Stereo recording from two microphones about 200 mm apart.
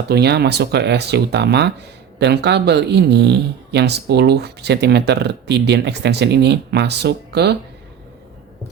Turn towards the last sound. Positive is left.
turn(degrees=-55)  # may be behind; listen again after turning